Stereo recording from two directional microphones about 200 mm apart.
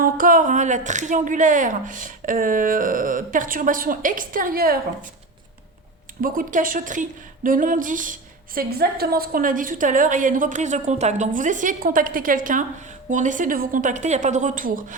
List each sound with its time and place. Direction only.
0.0 s a woman's voice: 45° right (ahead or behind)
6.2 s a woman's voice: 45° right (ahead or behind)